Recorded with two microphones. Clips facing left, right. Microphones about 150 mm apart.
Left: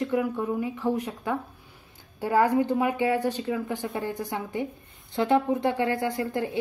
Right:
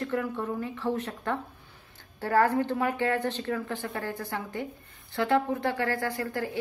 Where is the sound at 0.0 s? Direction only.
15° left (ahead or behind).